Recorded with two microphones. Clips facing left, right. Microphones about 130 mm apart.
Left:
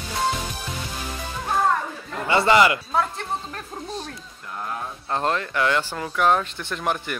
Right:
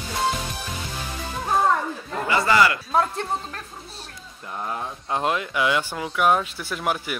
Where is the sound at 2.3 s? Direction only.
25° left (ahead or behind).